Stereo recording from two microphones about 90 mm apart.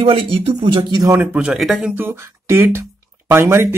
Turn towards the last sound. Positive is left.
turn(degrees=-25)  # may be behind; listen again after turning